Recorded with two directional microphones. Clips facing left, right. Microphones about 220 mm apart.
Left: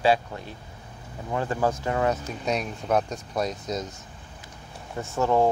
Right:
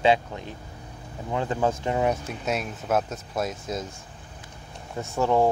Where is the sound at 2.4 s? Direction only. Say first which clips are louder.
Left 1 dB; 5° right (ahead or behind).